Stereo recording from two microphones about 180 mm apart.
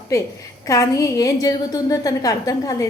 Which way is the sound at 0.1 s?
20° left (ahead or behind).